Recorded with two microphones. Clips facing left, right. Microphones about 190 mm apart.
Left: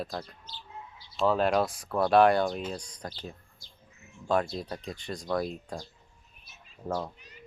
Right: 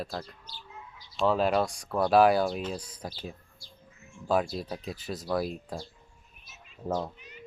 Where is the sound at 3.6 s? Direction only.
20° left (ahead or behind).